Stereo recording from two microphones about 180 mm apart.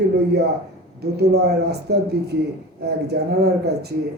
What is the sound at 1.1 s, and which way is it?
A man's voice, 65° right (ahead or behind).